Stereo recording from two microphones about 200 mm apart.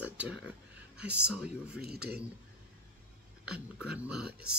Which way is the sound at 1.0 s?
5° right (ahead or behind).